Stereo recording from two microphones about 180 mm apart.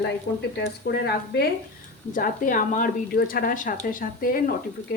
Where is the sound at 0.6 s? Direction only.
70° left (ahead or behind).